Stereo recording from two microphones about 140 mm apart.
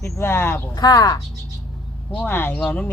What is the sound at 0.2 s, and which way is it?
Speech, 15° left (ahead or behind).